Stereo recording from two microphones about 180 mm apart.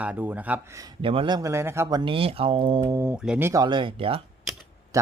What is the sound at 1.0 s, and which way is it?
Speech, 30° right (ahead or behind).